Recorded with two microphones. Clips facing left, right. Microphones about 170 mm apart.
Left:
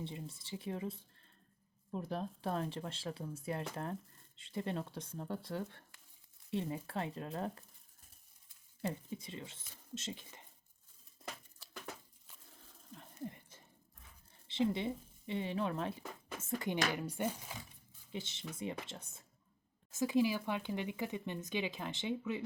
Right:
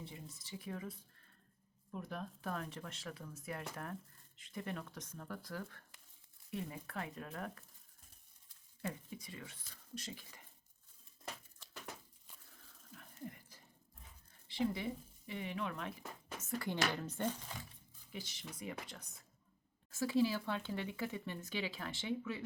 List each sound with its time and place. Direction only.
0.0 s speech: 30° left (ahead or behind)
8.8 s speech: 30° left (ahead or behind)
12.9 s a sound: 25° left (ahead or behind)
14.4 s speech: 25° left (ahead or behind)
16.6 s speech: 15° left (ahead or behind)
18.1 s speech: 25° left (ahead or behind)